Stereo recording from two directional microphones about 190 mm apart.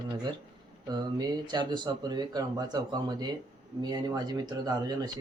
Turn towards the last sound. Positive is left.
turn(degrees=-20)  # may be behind; listen again after turning